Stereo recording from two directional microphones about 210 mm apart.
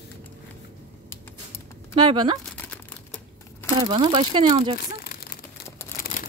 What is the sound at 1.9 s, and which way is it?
Speech, 20° right (ahead or behind).